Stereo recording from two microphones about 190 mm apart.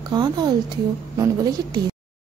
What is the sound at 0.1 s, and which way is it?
A woman's voice, 20° right (ahead or behind).